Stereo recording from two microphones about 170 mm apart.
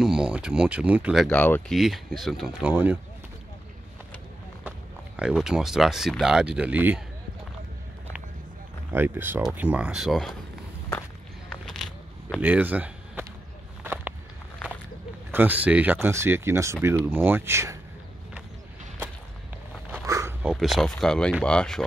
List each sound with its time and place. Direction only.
0.0 s speech: 5° right (ahead or behind)
1.3 s speech: 10° left (ahead or behind)
2.7 s speech: 10° right (ahead or behind)
4.6 s speech: 5° right (ahead or behind)
8.9 s speech: 10° right (ahead or behind)
11.6 s a sound: 5° left (ahead or behind)
12.4 s speech: 10° right (ahead or behind)
15.3 s speech: 10° right (ahead or behind)
19.9 s a sound: 15° right (ahead or behind)
20.4 s speech: centre (ahead or behind)